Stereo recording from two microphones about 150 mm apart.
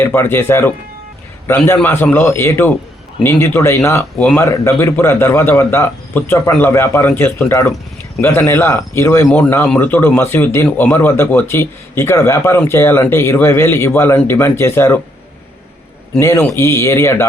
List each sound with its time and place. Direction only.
0.0 s speech: 15° left (ahead or behind)
16.1 s speech: 15° left (ahead or behind)